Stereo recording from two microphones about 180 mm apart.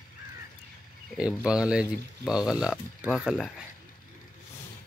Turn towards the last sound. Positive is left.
turn(degrees=0)  # may be behind; listen again after turning